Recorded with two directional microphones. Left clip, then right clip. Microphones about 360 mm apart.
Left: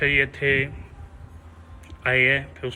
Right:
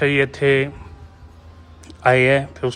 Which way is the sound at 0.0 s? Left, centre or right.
Right.